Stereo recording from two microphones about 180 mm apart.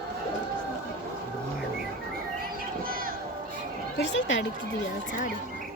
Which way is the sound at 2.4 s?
55° right (ahead or behind).